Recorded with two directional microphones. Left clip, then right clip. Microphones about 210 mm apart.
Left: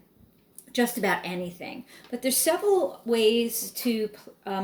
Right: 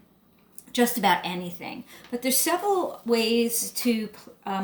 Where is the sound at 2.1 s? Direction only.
35° right (ahead or behind).